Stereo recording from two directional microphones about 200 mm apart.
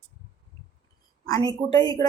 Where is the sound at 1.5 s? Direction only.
20° left (ahead or behind).